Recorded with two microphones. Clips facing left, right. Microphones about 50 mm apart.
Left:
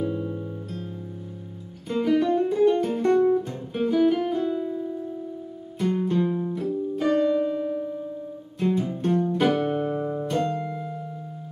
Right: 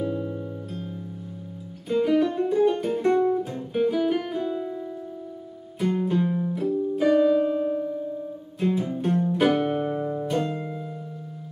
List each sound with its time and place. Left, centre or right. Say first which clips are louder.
0.0 s music: even; centre
1.9 s music: even; centre
9.5 s music: even; centre